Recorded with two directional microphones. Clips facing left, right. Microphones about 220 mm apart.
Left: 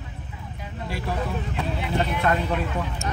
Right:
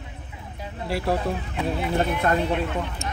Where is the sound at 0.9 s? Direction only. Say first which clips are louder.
Right 6 dB; 70° right (ahead or behind).